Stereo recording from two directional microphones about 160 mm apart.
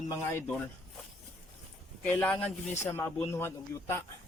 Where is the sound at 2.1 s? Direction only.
5° left (ahead or behind).